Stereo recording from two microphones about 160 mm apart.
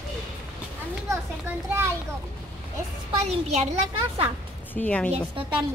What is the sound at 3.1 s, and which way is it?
Speech, 40° right (ahead or behind).